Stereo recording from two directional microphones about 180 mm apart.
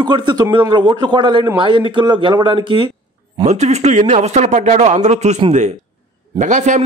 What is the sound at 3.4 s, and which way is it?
A man's voice, 40° right (ahead or behind).